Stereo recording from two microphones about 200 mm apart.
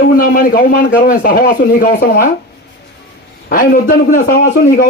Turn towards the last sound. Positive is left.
turn(degrees=50)  # may be behind; listen again after turning